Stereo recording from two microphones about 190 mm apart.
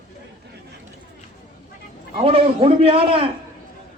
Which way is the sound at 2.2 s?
30° right (ahead or behind).